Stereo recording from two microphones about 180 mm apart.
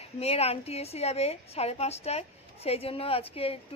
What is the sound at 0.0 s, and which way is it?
A woman's voice, 35° left (ahead or behind).